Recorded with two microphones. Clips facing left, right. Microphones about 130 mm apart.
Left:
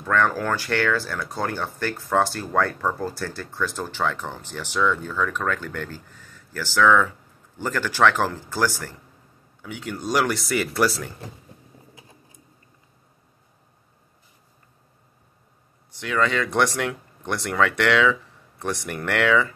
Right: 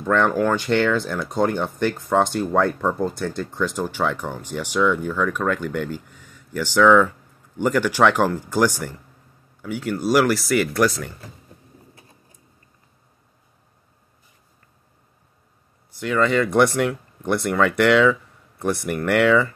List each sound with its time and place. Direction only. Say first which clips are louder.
0.0 s speech: right 2 dB; 20° right (ahead or behind)
0.3 s speech: right 6 dB; 5° right (ahead or behind)
0.6 s speech: right 4 dB; 20° right (ahead or behind); by 11.1 s centre (ahead or behind)
16.0 s speech: right 4 dB; 10° right (ahead or behind)